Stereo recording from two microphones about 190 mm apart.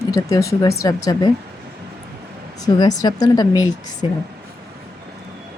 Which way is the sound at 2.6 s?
20° left (ahead or behind).